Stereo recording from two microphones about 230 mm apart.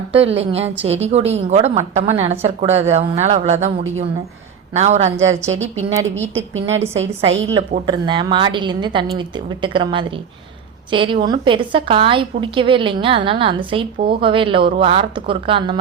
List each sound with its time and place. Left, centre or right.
0.2 s a woman's voice: right
4.7 s a woman's voice: right
6.0 s a woman's voice: centre
7.5 s a woman's voice: right